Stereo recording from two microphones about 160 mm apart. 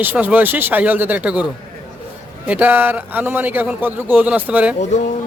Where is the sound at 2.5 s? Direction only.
10° right (ahead or behind).